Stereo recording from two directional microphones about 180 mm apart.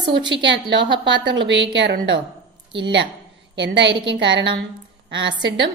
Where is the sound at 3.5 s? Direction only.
75° right (ahead or behind).